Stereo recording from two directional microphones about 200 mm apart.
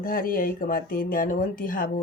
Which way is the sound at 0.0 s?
45° left (ahead or behind).